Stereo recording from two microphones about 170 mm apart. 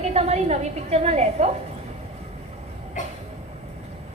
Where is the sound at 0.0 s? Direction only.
40° right (ahead or behind).